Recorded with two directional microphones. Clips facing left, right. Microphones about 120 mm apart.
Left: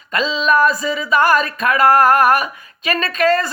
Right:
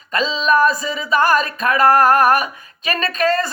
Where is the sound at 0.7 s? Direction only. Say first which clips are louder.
Left 2 dB; 30° right (ahead or behind).